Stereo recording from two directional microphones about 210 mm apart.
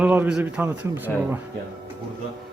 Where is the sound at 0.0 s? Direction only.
5° right (ahead or behind).